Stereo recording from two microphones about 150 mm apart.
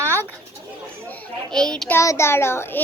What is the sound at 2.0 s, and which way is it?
Speech, 20° left (ahead or behind).